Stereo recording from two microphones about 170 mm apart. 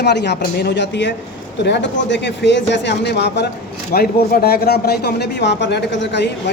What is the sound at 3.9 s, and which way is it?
Speech, 60° left (ahead or behind).